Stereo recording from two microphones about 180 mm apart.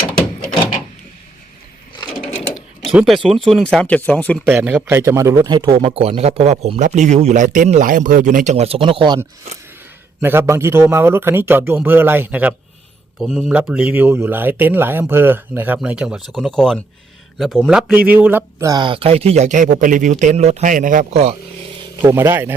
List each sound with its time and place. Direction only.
2.8 s speech: centre (ahead or behind)
4.4 s speech: 10° right (ahead or behind); by 9.2 s 25° right (ahead or behind)
10.2 s a man's voice: 10° right (ahead or behind)
13.1 s a man's voice: 5° left (ahead or behind); by 21.3 s 35° right (ahead or behind)
22.1 s a man's voice: 15° right (ahead or behind)